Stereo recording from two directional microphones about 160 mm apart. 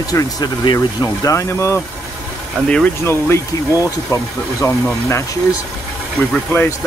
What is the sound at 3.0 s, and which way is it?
Speech, 15° left (ahead or behind).